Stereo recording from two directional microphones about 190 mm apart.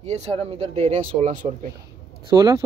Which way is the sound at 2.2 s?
15° right (ahead or behind).